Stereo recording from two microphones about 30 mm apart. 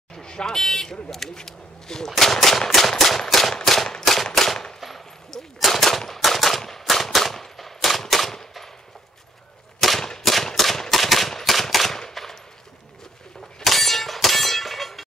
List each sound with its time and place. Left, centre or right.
0.1 s vehicle: left
0.5 s speech: centre
3.0 s machine gun: centre
3.6 s gunshot: centre
9.9 s gunshot: centre
10.4 s gunshot: centre
12.1 s machine gun: centre
13.7 s a sound: centre